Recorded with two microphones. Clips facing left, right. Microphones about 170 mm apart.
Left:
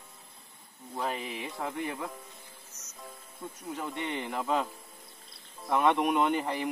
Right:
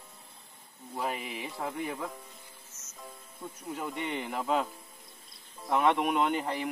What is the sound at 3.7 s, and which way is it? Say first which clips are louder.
Speech: even; 5° right (ahead or behind).